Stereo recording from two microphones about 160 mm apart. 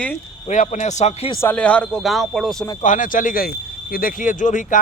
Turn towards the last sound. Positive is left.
turn(degrees=55)  # may be behind; listen again after turning